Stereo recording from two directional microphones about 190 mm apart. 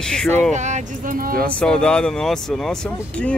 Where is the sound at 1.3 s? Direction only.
5° left (ahead or behind).